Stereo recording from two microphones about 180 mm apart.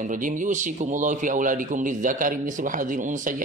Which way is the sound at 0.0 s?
45° right (ahead or behind).